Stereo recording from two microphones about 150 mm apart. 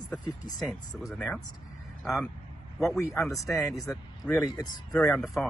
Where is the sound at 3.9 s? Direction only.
5° left (ahead or behind).